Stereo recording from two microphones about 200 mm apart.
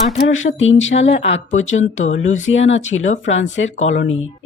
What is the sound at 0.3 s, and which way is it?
Speech, 75° left (ahead or behind).